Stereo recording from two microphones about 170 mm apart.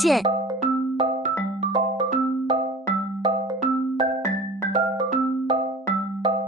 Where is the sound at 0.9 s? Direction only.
40° right (ahead or behind).